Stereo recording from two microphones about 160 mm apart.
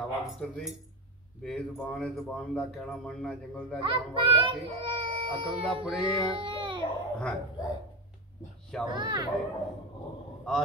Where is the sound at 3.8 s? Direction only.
30° right (ahead or behind).